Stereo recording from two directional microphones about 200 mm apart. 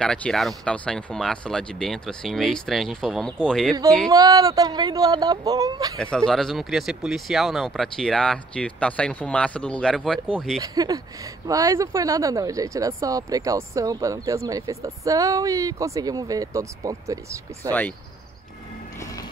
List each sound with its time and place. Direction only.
0.0 s speech: 5° left (ahead or behind)
4.1 s speech: 20° right (ahead or behind)
5.9 s speech: 5° left (ahead or behind)
10.6 s speech: 20° right (ahead or behind)
17.6 s speech: 10° left (ahead or behind)
18.9 s music: 15° left (ahead or behind)